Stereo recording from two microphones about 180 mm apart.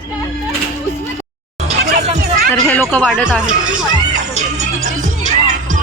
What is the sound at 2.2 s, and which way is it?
Music, 60° right (ahead or behind).